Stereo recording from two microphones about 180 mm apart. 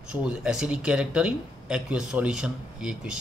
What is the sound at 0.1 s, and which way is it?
Speech, 5° right (ahead or behind).